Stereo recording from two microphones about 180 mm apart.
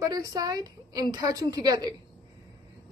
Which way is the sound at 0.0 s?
20° right (ahead or behind).